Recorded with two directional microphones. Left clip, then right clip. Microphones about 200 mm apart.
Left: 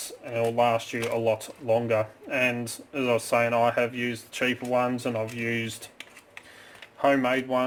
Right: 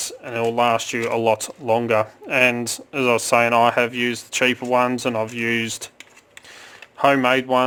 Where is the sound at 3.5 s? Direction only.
50° right (ahead or behind).